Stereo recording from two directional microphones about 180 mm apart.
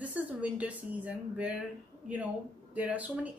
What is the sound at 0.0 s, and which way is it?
A woman's voice, 10° right (ahead or behind).